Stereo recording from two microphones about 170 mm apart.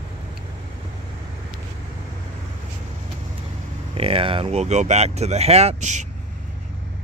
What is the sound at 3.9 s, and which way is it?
Speech, 35° right (ahead or behind).